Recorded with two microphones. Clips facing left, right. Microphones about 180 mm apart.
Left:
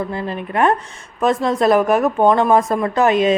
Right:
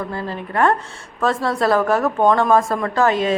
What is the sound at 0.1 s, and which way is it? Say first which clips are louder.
A woman's voice: left 2 dB; 20° left (ahead or behind).